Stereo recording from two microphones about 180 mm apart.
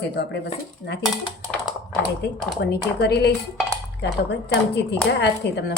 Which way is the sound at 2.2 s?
70° left (ahead or behind).